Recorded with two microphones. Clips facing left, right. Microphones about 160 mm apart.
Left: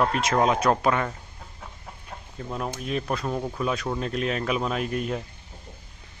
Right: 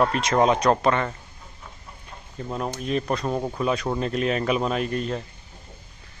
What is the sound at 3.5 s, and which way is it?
Speech, centre (ahead or behind).